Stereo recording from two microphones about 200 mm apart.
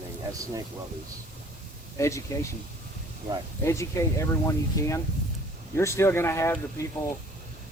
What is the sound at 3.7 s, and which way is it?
Speech, 15° left (ahead or behind).